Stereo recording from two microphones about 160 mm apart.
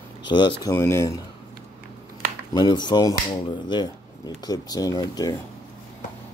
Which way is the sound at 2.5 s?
25° left (ahead or behind).